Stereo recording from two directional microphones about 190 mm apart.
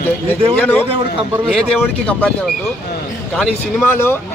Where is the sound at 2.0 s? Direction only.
5° left (ahead or behind).